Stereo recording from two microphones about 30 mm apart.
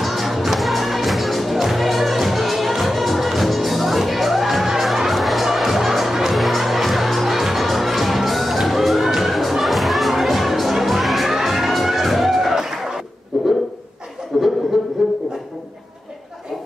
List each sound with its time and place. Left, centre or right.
0.0 s music: centre
5.5 s crowd: centre
6.3 s music: centre
12.5 s a sound: centre
14.7 s music: centre